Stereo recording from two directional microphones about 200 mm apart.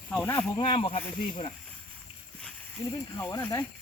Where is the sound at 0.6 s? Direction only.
30° left (ahead or behind).